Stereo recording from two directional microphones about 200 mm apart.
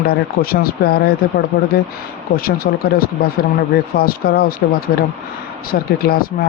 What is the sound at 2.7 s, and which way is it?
Speech, 45° left (ahead or behind).